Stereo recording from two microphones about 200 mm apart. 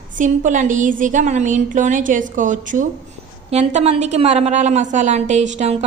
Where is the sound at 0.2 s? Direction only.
40° right (ahead or behind).